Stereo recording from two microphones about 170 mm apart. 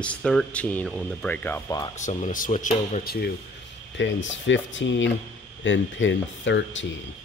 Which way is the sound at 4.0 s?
90° left.